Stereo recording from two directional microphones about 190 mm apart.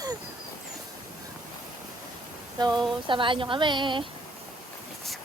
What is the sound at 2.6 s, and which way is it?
A woman's voice, 20° right (ahead or behind).